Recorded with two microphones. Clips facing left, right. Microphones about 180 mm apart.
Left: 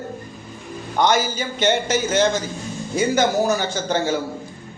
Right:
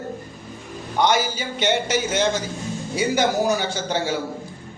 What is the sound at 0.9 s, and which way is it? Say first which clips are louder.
Speech: left 1 dB; 45° left (ahead or behind).